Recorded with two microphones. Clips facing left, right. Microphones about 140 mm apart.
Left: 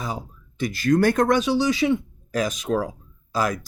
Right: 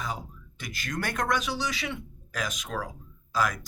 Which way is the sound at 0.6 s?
30° left (ahead or behind).